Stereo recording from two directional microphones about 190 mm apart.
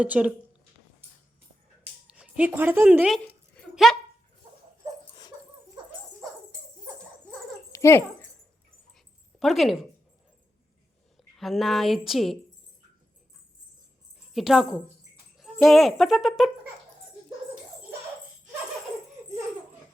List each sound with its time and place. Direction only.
0.0 s speech: 5° right (ahead or behind)
1.8 s a sound: 5° right (ahead or behind)
7.7 s dog: 15° left (ahead or behind)
9.4 s a woman's voice: centre (ahead or behind)
11.3 s a woman's voice: centre (ahead or behind)
14.3 s a woman's voice: centre (ahead or behind)